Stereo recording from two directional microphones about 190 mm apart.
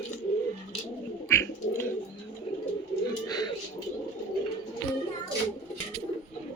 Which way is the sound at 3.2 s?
20° left (ahead or behind).